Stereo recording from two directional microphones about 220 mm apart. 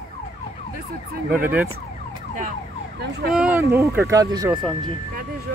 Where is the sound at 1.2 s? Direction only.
5° right (ahead or behind).